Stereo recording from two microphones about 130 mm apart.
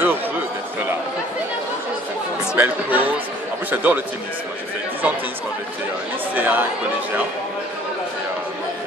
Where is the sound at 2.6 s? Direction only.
15° right (ahead or behind).